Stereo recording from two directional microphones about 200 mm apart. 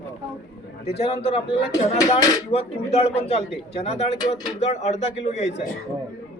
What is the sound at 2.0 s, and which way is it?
Speech, 15° left (ahead or behind).